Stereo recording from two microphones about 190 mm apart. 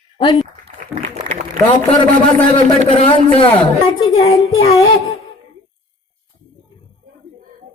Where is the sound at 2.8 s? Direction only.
30° left (ahead or behind).